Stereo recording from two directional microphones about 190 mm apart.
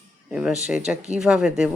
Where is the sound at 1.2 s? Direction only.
5° right (ahead or behind).